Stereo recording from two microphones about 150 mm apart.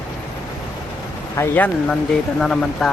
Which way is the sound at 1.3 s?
15° left (ahead or behind).